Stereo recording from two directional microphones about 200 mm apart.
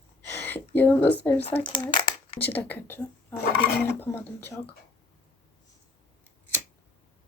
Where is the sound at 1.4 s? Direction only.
25° left (ahead or behind).